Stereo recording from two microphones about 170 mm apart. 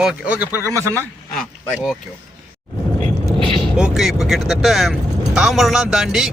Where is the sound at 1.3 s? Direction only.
Centre (ahead or behind).